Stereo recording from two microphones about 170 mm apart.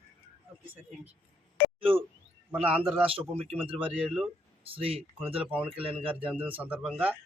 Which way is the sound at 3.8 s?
10° right (ahead or behind).